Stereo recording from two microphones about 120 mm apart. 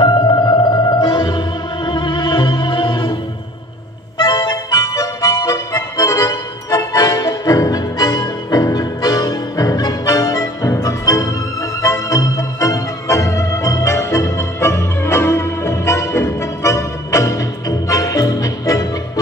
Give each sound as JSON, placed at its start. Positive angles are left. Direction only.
{"t": 0.0, "sound": "music", "side_deg": 35}
{"t": 4.2, "sound": "music", "side_deg": 35}
{"t": 11.8, "sound": "organ", "side_deg": 25}